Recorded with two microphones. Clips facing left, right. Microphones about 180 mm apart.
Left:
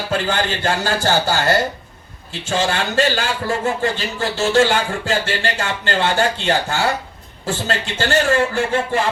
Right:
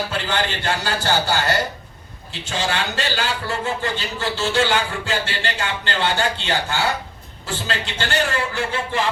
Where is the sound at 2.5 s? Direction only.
50° left (ahead or behind).